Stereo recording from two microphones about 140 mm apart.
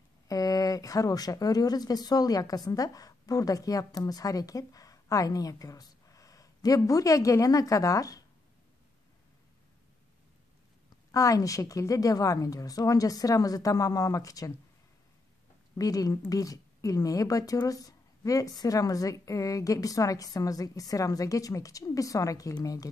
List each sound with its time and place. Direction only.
0.3 s speech: 25° left (ahead or behind)
11.1 s a woman's voice: 25° left (ahead or behind)
15.8 s a woman's voice: 25° left (ahead or behind)